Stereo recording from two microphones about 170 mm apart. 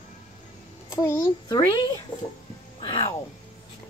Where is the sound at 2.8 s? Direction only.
30° left (ahead or behind).